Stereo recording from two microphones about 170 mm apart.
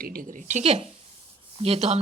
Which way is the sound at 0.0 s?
60° right (ahead or behind).